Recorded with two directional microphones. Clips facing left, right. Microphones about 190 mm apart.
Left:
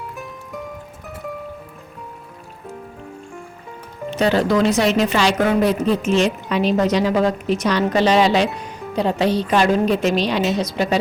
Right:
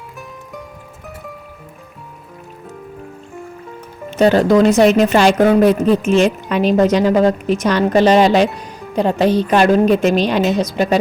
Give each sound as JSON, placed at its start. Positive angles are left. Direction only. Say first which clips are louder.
{"t": 4.2, "sound": "a woman's voice", "louder": "right 6 dB", "side_deg": -45}